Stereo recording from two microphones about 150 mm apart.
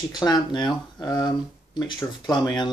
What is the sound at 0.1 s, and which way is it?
Speech, 30° left (ahead or behind).